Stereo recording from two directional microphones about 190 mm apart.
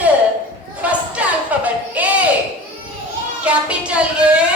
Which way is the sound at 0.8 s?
5° right (ahead or behind).